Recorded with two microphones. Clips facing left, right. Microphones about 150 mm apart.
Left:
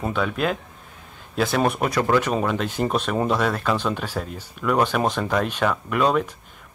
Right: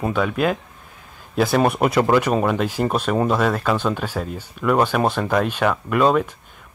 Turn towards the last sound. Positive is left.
turn(degrees=-5)  # may be behind; listen again after turning